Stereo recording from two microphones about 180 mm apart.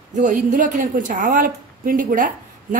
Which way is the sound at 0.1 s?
45° right (ahead or behind).